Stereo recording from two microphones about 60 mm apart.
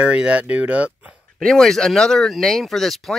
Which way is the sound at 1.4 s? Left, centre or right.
Centre.